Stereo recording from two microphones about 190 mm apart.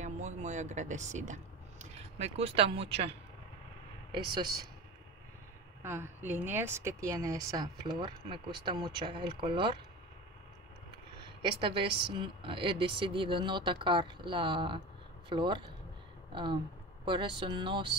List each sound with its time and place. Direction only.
0.0 s speech: 40° right (ahead or behind)
4.1 s speech: 25° right (ahead or behind)
5.8 s speech: 10° right (ahead or behind)
11.4 s speech: 25° right (ahead or behind)